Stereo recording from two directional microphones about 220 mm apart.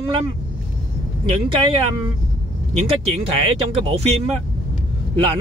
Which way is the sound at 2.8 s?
25° right (ahead or behind).